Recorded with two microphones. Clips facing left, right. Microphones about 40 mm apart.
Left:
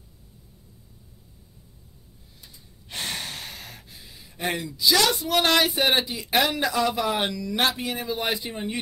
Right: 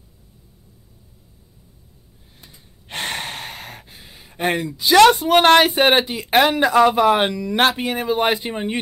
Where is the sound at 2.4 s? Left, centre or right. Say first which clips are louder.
Right 4 dB; right.